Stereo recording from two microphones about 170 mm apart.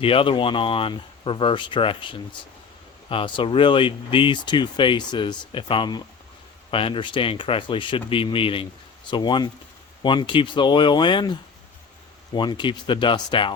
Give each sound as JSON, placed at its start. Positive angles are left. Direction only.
{"t": 0.0, "sound": "speech", "side_deg": 30}